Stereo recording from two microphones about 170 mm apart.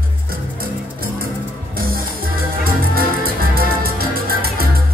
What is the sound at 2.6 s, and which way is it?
Music, 60° right (ahead or behind).